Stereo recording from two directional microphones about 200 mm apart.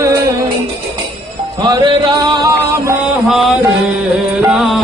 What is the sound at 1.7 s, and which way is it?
Music, 20° right (ahead or behind).